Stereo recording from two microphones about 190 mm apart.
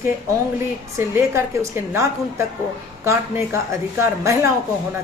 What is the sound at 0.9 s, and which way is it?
Speech, 15° right (ahead or behind).